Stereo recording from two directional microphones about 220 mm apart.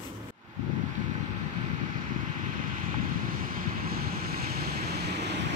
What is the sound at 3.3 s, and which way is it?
Vehicle, 40° right (ahead or behind).